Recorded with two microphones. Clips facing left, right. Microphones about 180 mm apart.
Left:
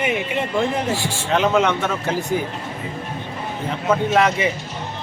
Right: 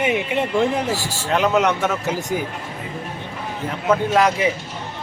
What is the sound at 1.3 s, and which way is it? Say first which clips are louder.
Speech: even; centre (ahead or behind).